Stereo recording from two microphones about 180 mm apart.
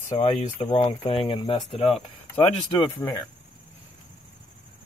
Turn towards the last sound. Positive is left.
turn(degrees=25)  # may be behind; listen again after turning